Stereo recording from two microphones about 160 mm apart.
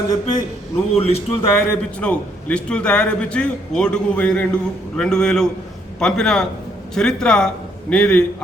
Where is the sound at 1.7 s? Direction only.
10° left (ahead or behind).